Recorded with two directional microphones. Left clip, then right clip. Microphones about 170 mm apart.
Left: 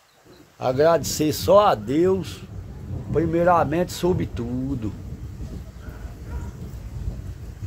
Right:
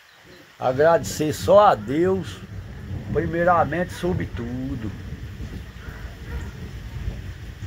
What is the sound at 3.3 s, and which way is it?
Speech, 25° left (ahead or behind).